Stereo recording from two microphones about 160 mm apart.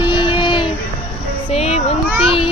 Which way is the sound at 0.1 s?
30° left (ahead or behind).